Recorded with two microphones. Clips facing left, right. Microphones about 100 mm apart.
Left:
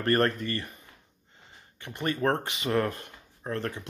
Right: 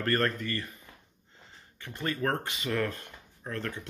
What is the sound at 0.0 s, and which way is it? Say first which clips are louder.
Speech: left 4 dB; 25° left (ahead or behind).